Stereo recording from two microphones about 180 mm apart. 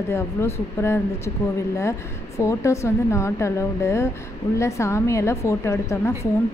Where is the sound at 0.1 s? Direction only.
15° left (ahead or behind).